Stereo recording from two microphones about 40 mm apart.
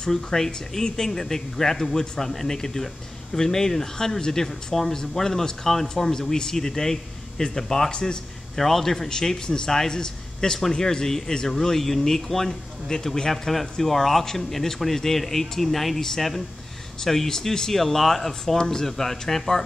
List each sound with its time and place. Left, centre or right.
0.1 s a man's voice: centre